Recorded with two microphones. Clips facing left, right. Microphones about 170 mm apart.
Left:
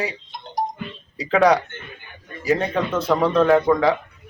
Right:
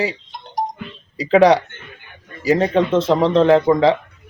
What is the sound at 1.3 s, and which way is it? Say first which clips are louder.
Speech: right 4 dB; 25° right (ahead or behind).